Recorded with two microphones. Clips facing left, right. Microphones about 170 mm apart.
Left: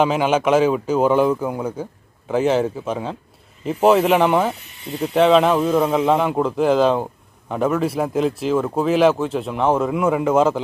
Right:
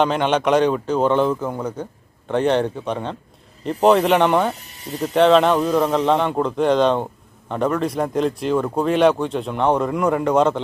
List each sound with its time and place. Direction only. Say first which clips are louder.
0.0 s a man's voice: left 1 dB; 5° left (ahead or behind)
4.6 s a sound: left 1 dB; 40° right (ahead or behind)
5.0 s a man's voice: even; 5° left (ahead or behind)